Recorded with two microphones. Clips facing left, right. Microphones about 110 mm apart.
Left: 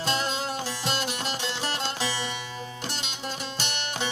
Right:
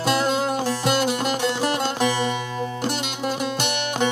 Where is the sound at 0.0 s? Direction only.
50° right (ahead or behind).